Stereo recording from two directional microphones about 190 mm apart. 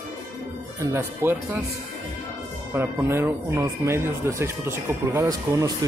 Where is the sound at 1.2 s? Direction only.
15° right (ahead or behind).